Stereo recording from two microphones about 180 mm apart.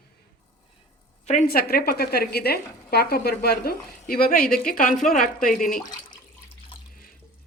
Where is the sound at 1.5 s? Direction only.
55° left (ahead or behind).